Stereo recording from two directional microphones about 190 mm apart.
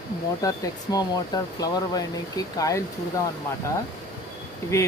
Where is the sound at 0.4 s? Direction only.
20° left (ahead or behind).